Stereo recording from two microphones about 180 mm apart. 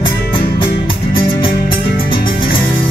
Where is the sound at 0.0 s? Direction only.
30° left (ahead or behind).